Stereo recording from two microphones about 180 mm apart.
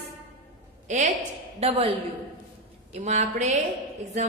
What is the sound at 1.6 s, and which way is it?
Speech, 30° right (ahead or behind).